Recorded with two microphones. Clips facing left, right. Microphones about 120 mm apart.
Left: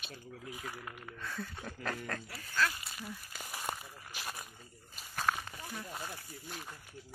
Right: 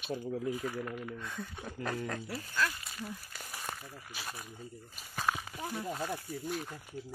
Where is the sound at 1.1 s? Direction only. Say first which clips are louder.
Right 1 dB; 15° right (ahead or behind).